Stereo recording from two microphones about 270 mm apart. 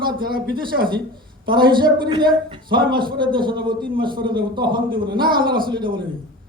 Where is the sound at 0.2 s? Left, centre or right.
Right.